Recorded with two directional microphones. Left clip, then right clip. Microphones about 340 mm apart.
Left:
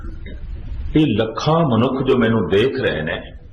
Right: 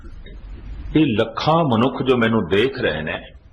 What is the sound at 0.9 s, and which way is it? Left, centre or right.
A man's voice, right.